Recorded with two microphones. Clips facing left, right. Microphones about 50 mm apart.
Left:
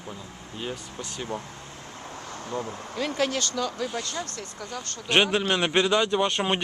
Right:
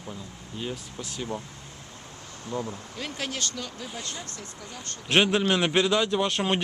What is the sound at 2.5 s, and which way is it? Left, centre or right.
Speech, left.